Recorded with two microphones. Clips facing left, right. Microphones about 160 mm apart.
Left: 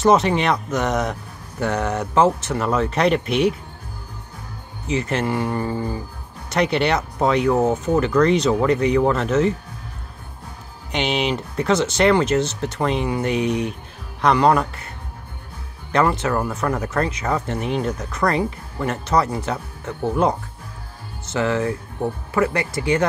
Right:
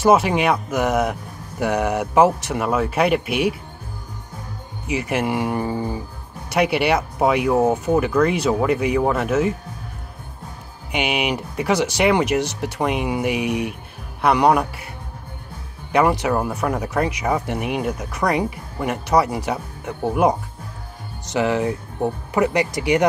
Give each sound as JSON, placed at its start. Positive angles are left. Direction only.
{"t": 0.0, "sound": "speech", "side_deg": -10}
{"t": 4.8, "sound": "speech", "side_deg": -10}
{"t": 10.9, "sound": "speech", "side_deg": -10}
{"t": 15.9, "sound": "speech", "side_deg": -10}